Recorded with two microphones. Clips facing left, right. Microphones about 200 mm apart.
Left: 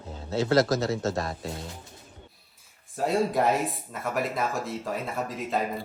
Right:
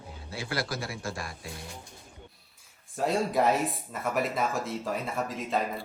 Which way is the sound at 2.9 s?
Centre (ahead or behind).